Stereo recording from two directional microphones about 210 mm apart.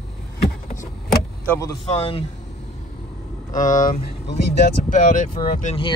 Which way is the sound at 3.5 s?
35° left (ahead or behind).